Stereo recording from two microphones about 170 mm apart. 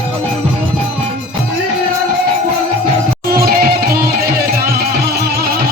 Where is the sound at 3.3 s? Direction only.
65° right (ahead or behind).